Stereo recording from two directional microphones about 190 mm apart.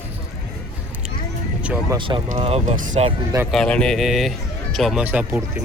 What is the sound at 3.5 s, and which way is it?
Speech, 5° left (ahead or behind).